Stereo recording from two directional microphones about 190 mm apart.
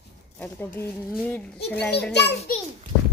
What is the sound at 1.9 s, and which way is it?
Speech, 65° left (ahead or behind).